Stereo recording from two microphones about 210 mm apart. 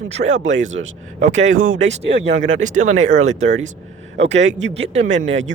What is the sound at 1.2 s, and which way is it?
Speech, 35° right (ahead or behind).